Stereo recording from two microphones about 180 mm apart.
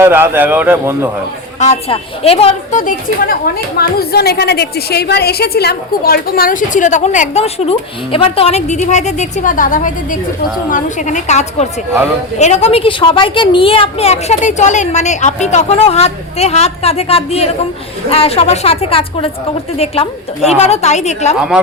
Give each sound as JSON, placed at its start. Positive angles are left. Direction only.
{"t": 0.0, "sound": "a man's voice", "side_deg": -10}
{"t": 1.5, "sound": "a woman's voice", "side_deg": 40}
{"t": 2.8, "sound": "a woman's voice", "side_deg": 55}
{"t": 20.6, "sound": "a woman's voice", "side_deg": 40}
{"t": 21.3, "sound": "speech", "side_deg": -5}